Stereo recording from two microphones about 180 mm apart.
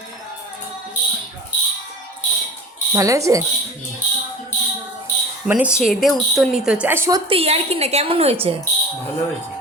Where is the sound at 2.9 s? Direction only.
15° right (ahead or behind).